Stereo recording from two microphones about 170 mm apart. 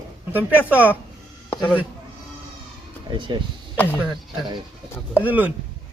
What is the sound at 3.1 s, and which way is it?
Speech, 25° right (ahead or behind).